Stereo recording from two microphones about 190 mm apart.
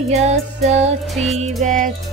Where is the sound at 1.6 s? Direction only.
45° right (ahead or behind).